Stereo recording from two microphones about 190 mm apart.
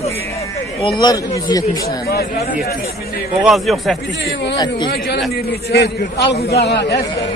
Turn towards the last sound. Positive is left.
turn(degrees=60)  # may be behind; listen again after turning